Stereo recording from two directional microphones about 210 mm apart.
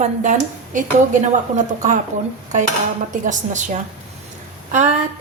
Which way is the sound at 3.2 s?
35° right (ahead or behind).